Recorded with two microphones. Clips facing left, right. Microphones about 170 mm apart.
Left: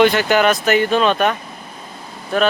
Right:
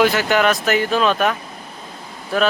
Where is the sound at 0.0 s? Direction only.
Centre (ahead or behind).